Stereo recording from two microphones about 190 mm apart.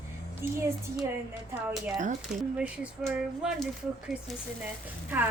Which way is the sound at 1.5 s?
Centre (ahead or behind).